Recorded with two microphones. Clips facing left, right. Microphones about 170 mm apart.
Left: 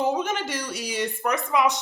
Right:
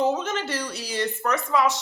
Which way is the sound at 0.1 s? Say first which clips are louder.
Even; 10° left (ahead or behind).